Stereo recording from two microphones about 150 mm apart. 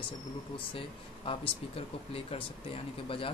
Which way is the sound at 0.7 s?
35° left (ahead or behind).